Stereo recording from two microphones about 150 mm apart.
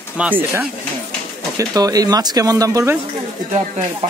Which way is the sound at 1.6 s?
25° right (ahead or behind).